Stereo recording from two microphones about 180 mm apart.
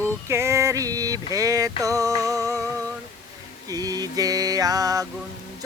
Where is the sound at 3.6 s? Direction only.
20° right (ahead or behind).